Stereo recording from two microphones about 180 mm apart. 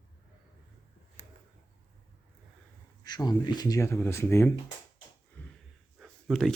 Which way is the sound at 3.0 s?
20° left (ahead or behind).